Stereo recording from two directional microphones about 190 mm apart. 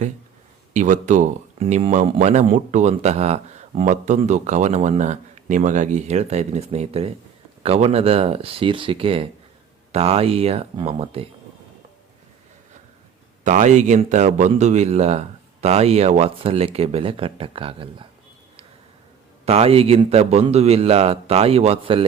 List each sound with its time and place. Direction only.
0.7 s speech: 40° right (ahead or behind)
1.9 s speech: 40° right (ahead or behind)
13.4 s speech: 40° right (ahead or behind)
19.5 s speech: 30° right (ahead or behind)